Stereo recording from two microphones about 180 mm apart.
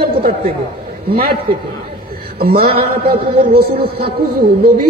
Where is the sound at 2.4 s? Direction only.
55° right (ahead or behind).